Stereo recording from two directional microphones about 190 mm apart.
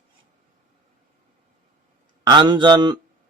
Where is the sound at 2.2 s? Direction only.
25° right (ahead or behind).